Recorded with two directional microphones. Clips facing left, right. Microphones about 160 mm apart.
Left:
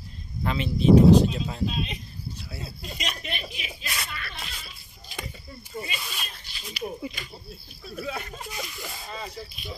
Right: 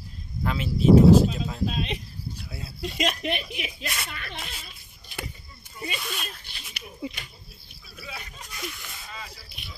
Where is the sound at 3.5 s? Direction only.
60° right (ahead or behind).